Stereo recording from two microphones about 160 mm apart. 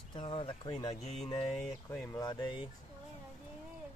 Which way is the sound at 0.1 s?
30° left (ahead or behind).